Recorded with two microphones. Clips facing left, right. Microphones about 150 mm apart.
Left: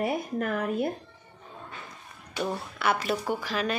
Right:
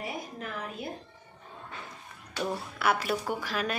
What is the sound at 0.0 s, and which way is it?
Speech, 55° left (ahead or behind).